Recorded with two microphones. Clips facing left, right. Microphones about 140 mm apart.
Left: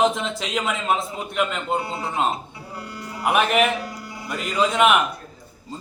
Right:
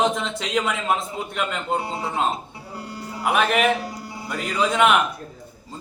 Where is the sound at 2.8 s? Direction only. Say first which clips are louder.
Right 3 dB; 30° right (ahead or behind).